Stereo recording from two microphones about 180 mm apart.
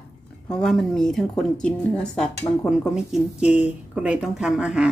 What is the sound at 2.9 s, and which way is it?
Speech, 5° right (ahead or behind).